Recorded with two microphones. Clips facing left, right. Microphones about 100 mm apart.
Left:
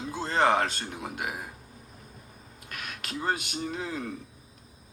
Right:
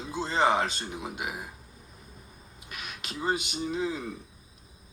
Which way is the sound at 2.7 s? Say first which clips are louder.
Left 2 dB; 15° right (ahead or behind).